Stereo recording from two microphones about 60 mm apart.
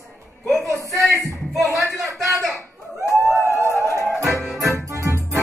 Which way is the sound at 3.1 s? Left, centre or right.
Right.